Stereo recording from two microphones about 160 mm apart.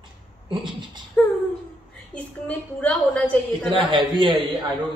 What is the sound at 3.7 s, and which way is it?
Speech, 30° right (ahead or behind).